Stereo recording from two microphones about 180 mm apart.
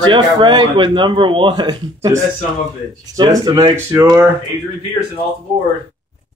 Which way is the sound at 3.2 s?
20° right (ahead or behind).